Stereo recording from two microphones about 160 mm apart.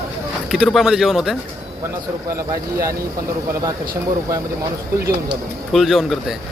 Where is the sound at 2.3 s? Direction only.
20° right (ahead or behind).